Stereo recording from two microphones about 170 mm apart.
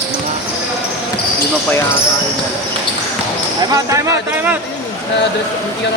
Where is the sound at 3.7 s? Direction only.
20° right (ahead or behind).